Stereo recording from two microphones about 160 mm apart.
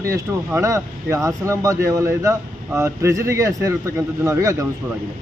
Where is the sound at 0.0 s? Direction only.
15° right (ahead or behind).